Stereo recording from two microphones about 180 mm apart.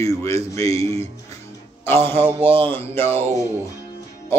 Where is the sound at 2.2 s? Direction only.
30° right (ahead or behind).